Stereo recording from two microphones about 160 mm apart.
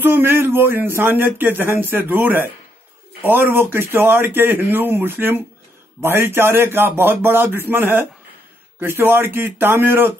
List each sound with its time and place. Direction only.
0.0 s speech: 15° right (ahead or behind)